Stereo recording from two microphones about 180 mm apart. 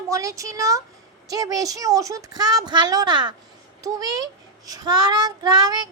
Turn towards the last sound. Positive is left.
turn(degrees=-20)  # may be behind; listen again after turning